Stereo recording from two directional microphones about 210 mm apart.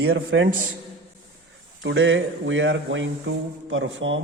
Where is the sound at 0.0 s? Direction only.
55° right (ahead or behind).